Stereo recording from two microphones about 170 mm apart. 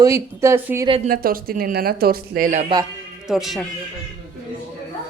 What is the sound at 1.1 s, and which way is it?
Speech, 60° right (ahead or behind).